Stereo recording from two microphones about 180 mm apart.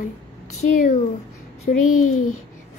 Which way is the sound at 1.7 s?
45° left (ahead or behind).